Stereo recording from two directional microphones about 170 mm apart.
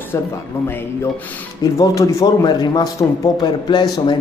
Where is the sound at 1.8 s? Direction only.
20° left (ahead or behind).